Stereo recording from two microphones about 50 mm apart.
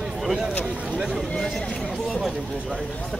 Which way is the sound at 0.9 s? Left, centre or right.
Centre.